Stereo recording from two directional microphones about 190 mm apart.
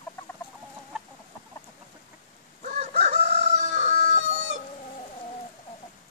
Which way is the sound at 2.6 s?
40° right (ahead or behind).